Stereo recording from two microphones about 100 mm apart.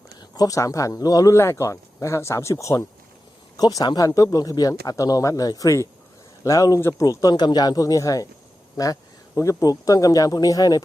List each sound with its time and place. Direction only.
0.3 s speech: 35° left (ahead or behind)